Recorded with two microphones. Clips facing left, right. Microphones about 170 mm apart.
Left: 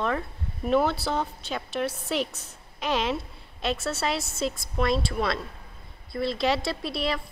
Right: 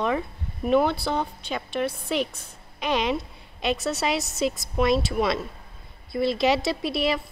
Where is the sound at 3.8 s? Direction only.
15° right (ahead or behind).